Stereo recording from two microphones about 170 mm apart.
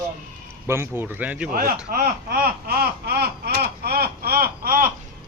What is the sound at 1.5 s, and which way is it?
Speech, 60° right (ahead or behind).